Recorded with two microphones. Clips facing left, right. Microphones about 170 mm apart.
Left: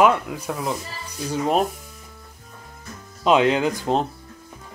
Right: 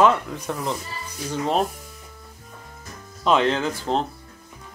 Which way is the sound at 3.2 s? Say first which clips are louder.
Left 3 dB; 15° left (ahead or behind).